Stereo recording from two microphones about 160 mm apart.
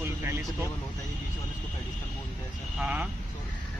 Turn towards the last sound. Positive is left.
turn(degrees=-10)  # may be behind; listen again after turning